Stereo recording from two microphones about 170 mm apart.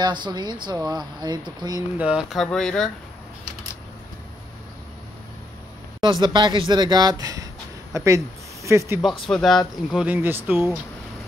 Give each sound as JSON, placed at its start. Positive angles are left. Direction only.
{"t": 0.0, "sound": "speech", "side_deg": -25}
{"t": 2.0, "sound": "speech", "side_deg": -5}
{"t": 6.0, "sound": "speech", "side_deg": -25}
{"t": 9.2, "sound": "speech", "side_deg": 0}